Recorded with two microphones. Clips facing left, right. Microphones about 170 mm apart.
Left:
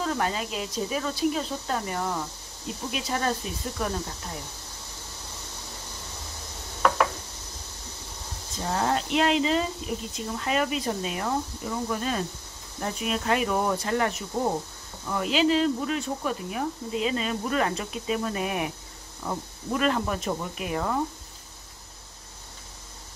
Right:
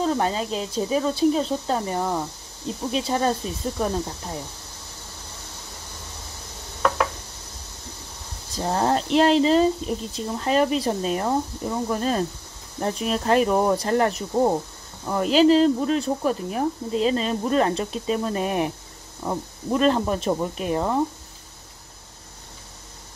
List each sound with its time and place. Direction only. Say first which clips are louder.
0.0 s speech: right 5 dB; 30° right (ahead or behind)
8.5 s speech: right 4 dB; 35° right (ahead or behind)